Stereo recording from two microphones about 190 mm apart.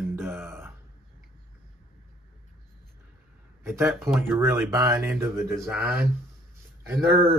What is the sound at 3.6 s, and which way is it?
Speech, 10° right (ahead or behind).